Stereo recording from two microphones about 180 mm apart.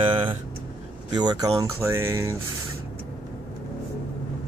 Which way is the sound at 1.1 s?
25° right (ahead or behind).